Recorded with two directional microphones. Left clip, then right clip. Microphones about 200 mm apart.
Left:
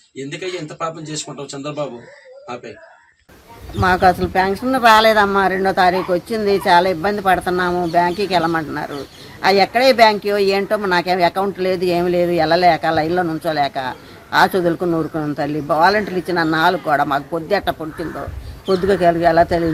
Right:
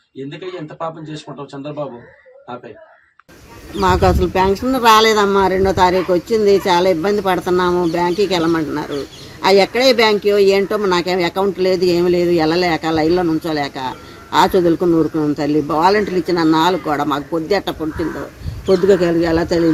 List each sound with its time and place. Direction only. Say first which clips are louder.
3.8 s speech: even; 15° left (ahead or behind)